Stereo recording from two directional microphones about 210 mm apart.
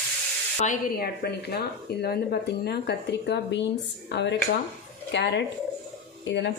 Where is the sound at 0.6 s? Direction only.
40° left (ahead or behind).